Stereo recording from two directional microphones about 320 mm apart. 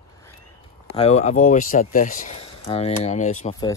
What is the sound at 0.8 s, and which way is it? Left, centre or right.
Speech, centre.